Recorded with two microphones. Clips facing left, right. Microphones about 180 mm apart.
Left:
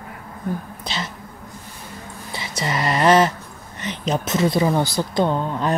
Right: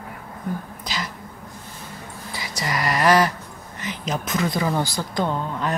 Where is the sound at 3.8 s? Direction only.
30° left (ahead or behind).